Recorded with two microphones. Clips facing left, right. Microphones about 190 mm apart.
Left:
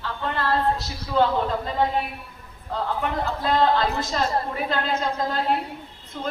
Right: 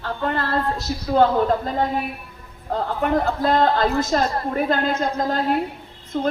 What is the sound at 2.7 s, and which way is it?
A woman's voice, 45° right (ahead or behind).